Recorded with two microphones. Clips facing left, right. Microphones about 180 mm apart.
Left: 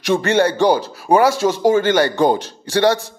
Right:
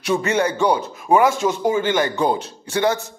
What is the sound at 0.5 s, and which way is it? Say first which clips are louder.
A man's voice: left 4 dB; 90° left.